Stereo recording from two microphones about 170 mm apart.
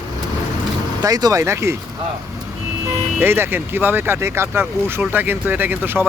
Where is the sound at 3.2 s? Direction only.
10° right (ahead or behind).